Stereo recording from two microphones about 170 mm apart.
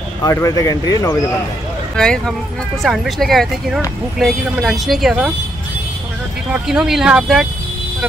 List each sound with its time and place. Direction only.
0.2 s speech: 20° left (ahead or behind)
2.0 s speech: 5° left (ahead or behind)
6.5 s speech: 5° right (ahead or behind)